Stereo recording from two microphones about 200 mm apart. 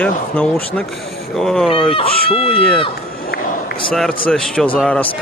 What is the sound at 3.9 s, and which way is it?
Speech, centre (ahead or behind).